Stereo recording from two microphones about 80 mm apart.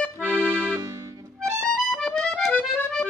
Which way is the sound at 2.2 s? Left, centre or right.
Centre.